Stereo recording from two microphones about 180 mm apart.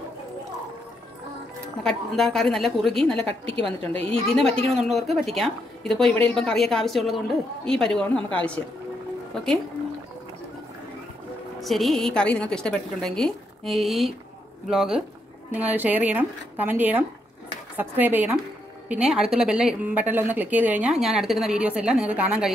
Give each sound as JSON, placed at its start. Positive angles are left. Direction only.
{"t": 1.8, "sound": "a woman's voice", "side_deg": 0}
{"t": 3.2, "sound": "a woman's voice", "side_deg": -30}
{"t": 4.1, "sound": "a woman's voice", "side_deg": 0}
{"t": 4.5, "sound": "a woman's voice", "side_deg": -35}
{"t": 4.7, "sound": "a woman's voice", "side_deg": 0}
{"t": 11.6, "sound": "a woman's voice", "side_deg": 0}